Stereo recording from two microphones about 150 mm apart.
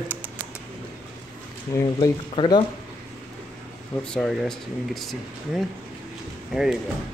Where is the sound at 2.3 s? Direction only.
30° left (ahead or behind).